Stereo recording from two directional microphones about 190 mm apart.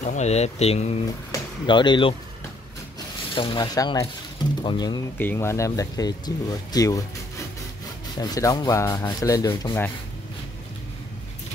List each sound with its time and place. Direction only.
0.0 s speech: 35° left (ahead or behind)
3.3 s speech: 25° left (ahead or behind)
5.1 s speech: 10° left (ahead or behind)